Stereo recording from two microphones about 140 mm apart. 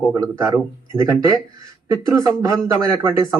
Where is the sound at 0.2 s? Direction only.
25° right (ahead or behind).